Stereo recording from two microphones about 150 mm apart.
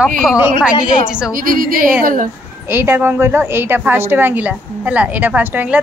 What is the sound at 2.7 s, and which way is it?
A woman's voice, 15° right (ahead or behind).